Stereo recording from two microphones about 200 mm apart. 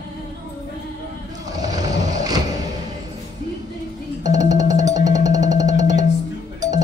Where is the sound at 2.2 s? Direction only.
20° right (ahead or behind).